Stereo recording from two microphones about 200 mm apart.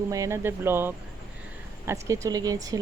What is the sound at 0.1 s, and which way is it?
Speech, 15° right (ahead or behind).